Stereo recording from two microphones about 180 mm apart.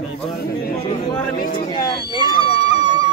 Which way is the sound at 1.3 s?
50° left (ahead or behind).